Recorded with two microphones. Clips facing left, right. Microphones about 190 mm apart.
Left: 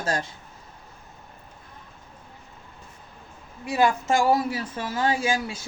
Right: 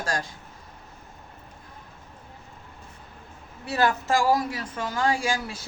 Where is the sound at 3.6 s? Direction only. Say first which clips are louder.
Left 2 dB; 15° left (ahead or behind).